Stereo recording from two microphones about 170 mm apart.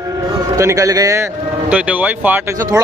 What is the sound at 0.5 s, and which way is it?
Speech, 20° right (ahead or behind).